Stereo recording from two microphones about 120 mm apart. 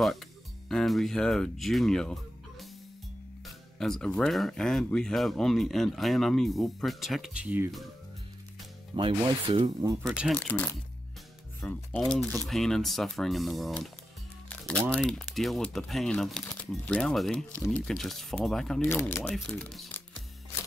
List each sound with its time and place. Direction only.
0.7 s speech: centre (ahead or behind)
3.4 s speech: 5° left (ahead or behind)
7.4 s speech: 15° right (ahead or behind)
8.9 s speech: 45° right (ahead or behind)
10.3 s speech: 15° left (ahead or behind)
18.8 s speech: 15° left (ahead or behind)
19.5 s speech: centre (ahead or behind)